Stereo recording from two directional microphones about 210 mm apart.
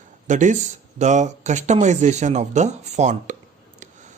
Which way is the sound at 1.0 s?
35° right (ahead or behind).